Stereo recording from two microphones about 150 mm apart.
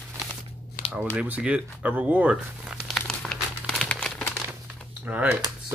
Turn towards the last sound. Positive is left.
turn(degrees=-10)  # may be behind; listen again after turning